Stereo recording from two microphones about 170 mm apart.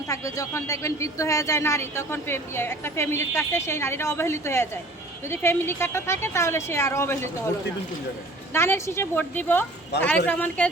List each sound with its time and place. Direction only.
0.1 s speech: 20° left (ahead or behind)
8.5 s speech: 15° left (ahead or behind)